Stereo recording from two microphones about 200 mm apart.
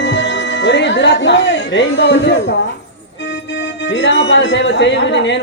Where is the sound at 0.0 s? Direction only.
65° left (ahead or behind).